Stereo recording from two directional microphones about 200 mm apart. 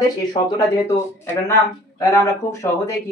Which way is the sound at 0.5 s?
15° left (ahead or behind).